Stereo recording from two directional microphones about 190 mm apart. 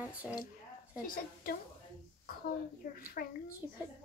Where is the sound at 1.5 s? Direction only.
50° left (ahead or behind).